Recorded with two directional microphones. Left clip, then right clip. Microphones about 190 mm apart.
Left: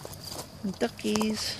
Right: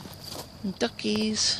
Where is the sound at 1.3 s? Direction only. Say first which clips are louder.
Right 7 dB; 75° right (ahead or behind).